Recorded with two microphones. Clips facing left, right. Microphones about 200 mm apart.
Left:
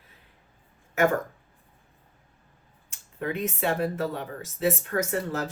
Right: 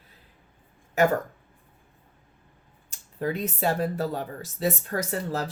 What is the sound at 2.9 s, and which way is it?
Speech, 35° right (ahead or behind).